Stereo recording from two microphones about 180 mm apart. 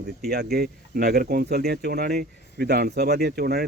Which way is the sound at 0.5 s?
60° right (ahead or behind).